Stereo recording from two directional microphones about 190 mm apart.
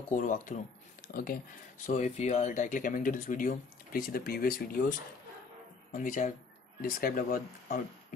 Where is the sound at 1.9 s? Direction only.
35° left (ahead or behind).